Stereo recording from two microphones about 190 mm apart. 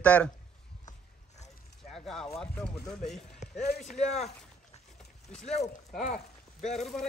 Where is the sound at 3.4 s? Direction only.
35° left (ahead or behind).